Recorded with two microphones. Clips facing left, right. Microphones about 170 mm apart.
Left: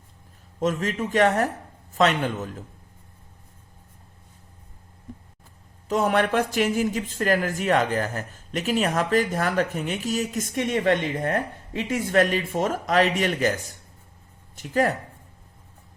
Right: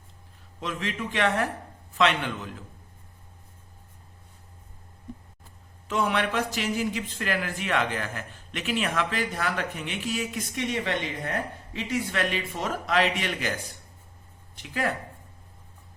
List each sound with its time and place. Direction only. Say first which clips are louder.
0.6 s speech: left 7 dB; 45° left (ahead or behind)
5.9 s speech: left 5 dB; 45° left (ahead or behind)